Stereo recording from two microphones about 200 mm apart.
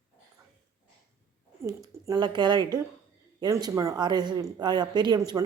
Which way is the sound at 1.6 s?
15° right (ahead or behind).